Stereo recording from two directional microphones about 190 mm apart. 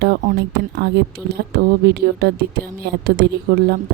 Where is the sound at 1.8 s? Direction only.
55° right (ahead or behind).